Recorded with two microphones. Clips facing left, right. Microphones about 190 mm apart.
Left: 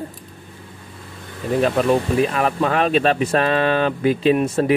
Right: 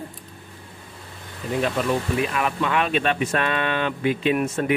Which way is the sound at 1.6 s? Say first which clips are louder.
Left 6 dB; 35° left (ahead or behind).